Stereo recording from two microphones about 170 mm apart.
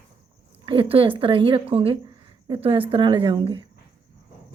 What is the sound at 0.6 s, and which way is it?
A woman's voice, 30° right (ahead or behind).